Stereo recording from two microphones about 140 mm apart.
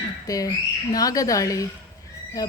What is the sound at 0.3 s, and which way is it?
A woman's voice, 25° left (ahead or behind).